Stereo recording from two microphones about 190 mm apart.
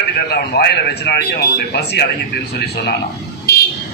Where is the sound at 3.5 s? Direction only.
55° left (ahead or behind).